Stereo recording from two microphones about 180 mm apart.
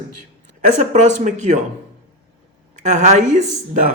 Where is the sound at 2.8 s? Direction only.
40° right (ahead or behind).